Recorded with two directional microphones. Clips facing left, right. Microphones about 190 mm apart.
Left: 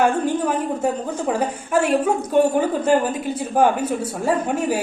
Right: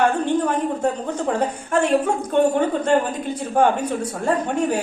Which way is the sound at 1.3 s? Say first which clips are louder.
Left 1 dB; 5° left (ahead or behind).